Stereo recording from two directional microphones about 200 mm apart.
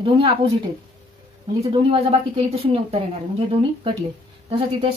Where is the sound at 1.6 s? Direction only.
25° right (ahead or behind).